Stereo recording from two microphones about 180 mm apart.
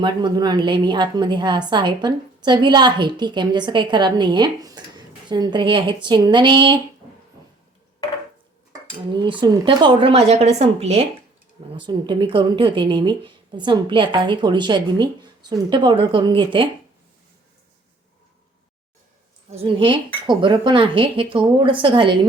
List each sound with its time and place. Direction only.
0.0 s a woman's voice: 25° right (ahead or behind)
9.1 s a woman's voice: 25° right (ahead or behind)
19.5 s a woman's voice: 30° right (ahead or behind)